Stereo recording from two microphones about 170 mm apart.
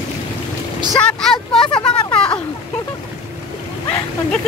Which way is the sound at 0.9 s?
5° left (ahead or behind).